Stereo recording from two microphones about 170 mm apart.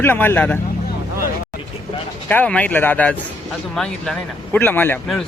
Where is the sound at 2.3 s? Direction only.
10° left (ahead or behind).